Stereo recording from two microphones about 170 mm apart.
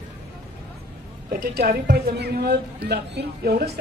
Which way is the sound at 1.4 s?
70° right (ahead or behind).